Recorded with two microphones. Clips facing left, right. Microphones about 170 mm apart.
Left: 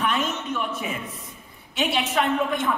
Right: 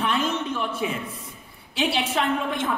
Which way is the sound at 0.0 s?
30° right (ahead or behind).